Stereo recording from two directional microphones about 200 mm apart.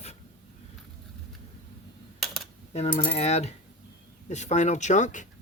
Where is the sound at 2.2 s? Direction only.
Centre (ahead or behind).